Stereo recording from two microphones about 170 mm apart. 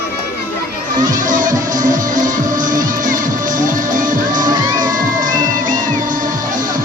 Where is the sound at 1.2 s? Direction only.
50° right (ahead or behind).